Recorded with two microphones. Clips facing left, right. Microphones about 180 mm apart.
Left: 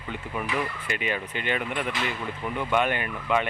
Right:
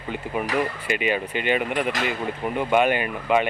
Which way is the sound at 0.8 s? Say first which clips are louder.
Right 6 dB; 90° right.